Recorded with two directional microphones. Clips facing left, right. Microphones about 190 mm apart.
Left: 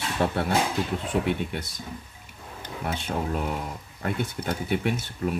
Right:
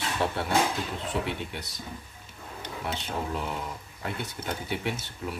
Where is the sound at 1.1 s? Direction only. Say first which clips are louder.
Left 5 dB; 50° left (ahead or behind).